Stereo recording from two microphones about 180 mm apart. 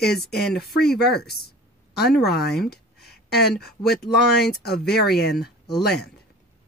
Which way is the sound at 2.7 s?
65° left (ahead or behind).